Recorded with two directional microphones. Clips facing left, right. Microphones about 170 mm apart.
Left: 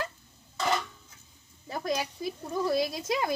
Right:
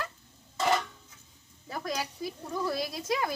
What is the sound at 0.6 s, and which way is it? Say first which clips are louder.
Dishes: right 2 dB; 5° right (ahead or behind).